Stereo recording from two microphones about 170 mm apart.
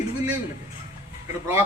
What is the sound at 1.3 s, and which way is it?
Speech, 15° right (ahead or behind).